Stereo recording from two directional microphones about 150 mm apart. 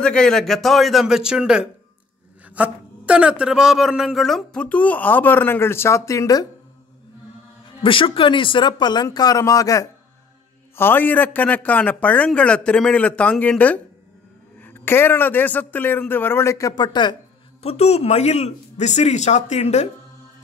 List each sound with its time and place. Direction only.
0.0 s a man's voice: 5° left (ahead or behind); by 6.4 s 20° left (ahead or behind)
7.8 s a man's voice: 35° left (ahead or behind)